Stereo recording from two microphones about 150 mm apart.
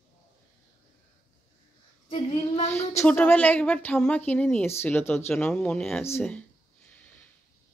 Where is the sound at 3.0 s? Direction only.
10° left (ahead or behind).